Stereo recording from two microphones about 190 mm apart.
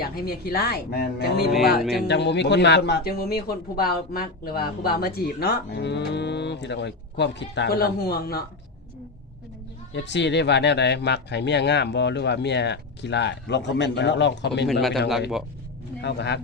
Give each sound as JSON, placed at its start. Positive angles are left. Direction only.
{"t": 0.0, "sound": "a man's voice", "side_deg": 55}
{"t": 1.8, "sound": "a man's voice", "side_deg": 0}
{"t": 2.0, "sound": "a man's voice", "side_deg": 65}
{"t": 9.9, "sound": "a man's voice", "side_deg": 65}
{"t": 14.7, "sound": "a man's voice", "side_deg": 0}
{"t": 16.0, "sound": "a man's voice", "side_deg": 60}